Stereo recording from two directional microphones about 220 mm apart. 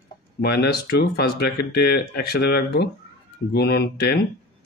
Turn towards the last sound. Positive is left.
turn(degrees=45)  # may be behind; listen again after turning